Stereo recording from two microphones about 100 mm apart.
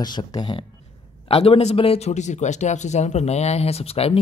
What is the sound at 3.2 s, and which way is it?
Speech, 90° left.